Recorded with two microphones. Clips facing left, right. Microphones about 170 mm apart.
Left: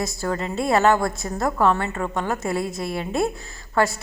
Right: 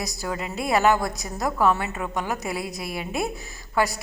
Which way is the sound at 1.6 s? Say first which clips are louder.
Left 1 dB; 10° right (ahead or behind).